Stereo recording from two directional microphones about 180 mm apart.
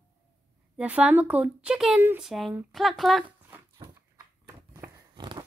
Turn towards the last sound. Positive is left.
turn(degrees=-25)  # may be behind; listen again after turning